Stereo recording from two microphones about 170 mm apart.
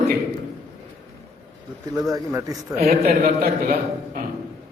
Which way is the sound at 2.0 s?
20° right (ahead or behind).